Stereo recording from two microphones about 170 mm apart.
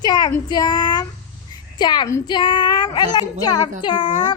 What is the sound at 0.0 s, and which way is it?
Child singing, 25° left (ahead or behind).